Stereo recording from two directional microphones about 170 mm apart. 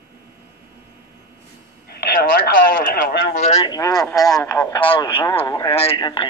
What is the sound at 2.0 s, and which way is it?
Speech, 70° left (ahead or behind).